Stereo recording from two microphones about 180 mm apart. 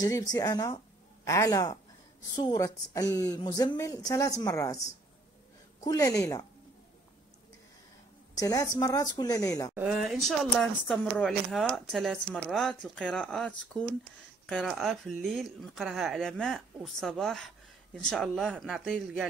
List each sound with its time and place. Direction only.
0.0 s speech: 20° left (ahead or behind)
8.4 s speech: 20° left (ahead or behind)
9.8 s speech: centre (ahead or behind)